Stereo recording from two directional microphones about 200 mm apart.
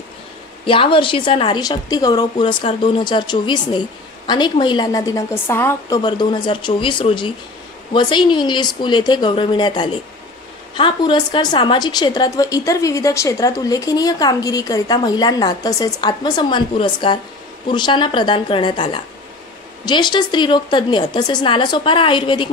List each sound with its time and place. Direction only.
0.7 s a woman's voice: 25° left (ahead or behind)